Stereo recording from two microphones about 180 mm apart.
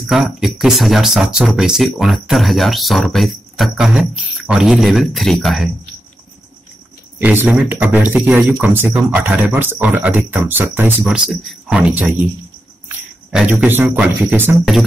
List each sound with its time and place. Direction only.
0.0 s speech: centre (ahead or behind)
7.2 s speech: 10° right (ahead or behind)
13.3 s speech: 5° right (ahead or behind)